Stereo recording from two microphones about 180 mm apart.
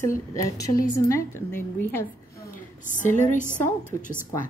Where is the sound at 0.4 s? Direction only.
15° left (ahead or behind).